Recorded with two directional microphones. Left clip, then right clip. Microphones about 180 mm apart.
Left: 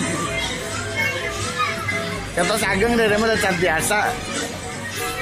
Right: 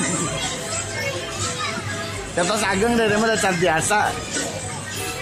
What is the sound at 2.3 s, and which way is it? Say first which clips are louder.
A man's voice: left 1 dB; 15° right (ahead or behind).